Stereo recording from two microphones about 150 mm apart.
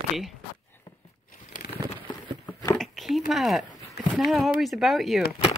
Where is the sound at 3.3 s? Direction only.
Centre (ahead or behind).